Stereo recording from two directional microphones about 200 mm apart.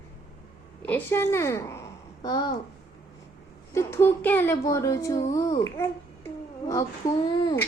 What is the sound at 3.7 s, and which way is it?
Speech, 15° left (ahead or behind).